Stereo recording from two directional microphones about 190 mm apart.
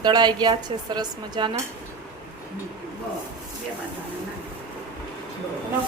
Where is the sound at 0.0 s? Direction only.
20° right (ahead or behind).